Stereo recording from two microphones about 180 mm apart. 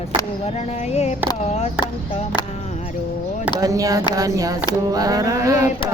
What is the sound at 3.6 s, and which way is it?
Speech, 20° right (ahead or behind).